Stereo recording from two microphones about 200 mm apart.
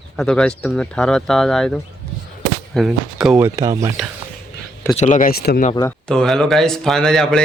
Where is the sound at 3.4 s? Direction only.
15° right (ahead or behind).